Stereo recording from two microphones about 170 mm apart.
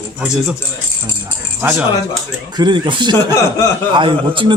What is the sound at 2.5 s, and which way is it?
A man's voice, 25° right (ahead or behind).